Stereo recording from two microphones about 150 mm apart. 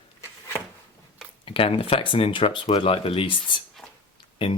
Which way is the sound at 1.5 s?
40° left (ahead or behind).